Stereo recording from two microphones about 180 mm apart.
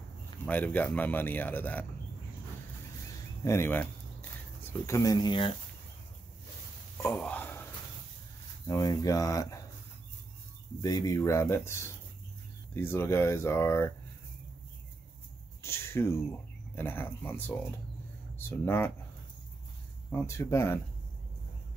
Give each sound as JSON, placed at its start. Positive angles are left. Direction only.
{"t": 0.5, "sound": "a man's voice", "side_deg": 10}
{"t": 3.4, "sound": "speech", "side_deg": 15}
{"t": 7.0, "sound": "a sound", "side_deg": 10}
{"t": 8.6, "sound": "speech", "side_deg": 20}
{"t": 10.8, "sound": "a man's voice", "side_deg": 20}
{"t": 15.6, "sound": "a man's voice", "side_deg": 15}
{"t": 20.1, "sound": "a man's voice", "side_deg": 15}